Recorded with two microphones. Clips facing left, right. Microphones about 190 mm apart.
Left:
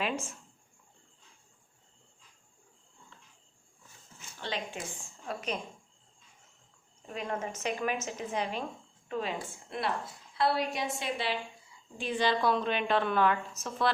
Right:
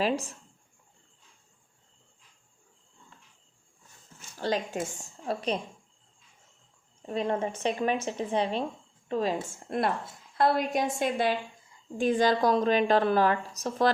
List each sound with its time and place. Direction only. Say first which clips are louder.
0.0 s a woman's voice: right 6 dB; 35° right (ahead or behind)
4.4 s a woman's voice: right 8 dB; 40° right (ahead or behind)
7.1 s a woman's voice: right 7 dB; 30° right (ahead or behind)